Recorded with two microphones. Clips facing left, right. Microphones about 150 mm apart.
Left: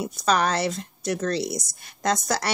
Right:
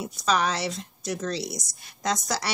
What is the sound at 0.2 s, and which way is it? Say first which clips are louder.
Speech: left 2 dB; 45° left (ahead or behind).